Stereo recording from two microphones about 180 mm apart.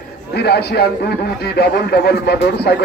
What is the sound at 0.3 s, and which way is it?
Speech, 65° left (ahead or behind).